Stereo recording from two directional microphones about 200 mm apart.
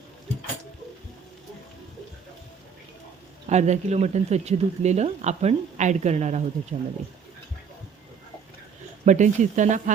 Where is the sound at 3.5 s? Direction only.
35° right (ahead or behind).